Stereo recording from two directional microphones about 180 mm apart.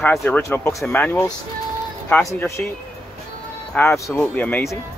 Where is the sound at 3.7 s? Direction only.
15° left (ahead or behind).